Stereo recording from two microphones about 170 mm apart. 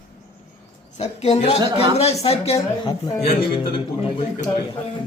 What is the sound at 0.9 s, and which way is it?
Music, 40° left (ahead or behind).